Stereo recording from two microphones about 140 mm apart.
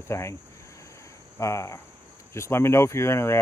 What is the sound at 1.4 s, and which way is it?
Speech, 20° left (ahead or behind).